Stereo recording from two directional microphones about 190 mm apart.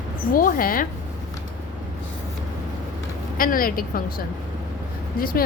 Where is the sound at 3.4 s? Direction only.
50° left (ahead or behind).